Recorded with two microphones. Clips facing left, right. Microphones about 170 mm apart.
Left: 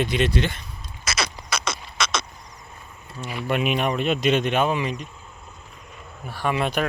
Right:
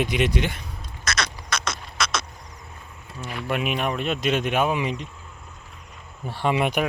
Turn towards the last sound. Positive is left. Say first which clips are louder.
# right 1 dB
turn(degrees=-15)  # may be behind; listen again after turning